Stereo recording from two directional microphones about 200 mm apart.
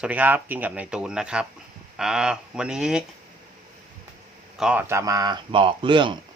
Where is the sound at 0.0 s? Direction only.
10° right (ahead or behind).